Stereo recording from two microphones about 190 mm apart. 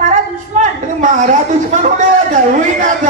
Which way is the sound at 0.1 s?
40° right (ahead or behind).